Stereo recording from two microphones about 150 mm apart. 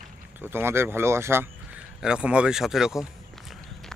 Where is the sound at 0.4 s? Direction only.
15° right (ahead or behind).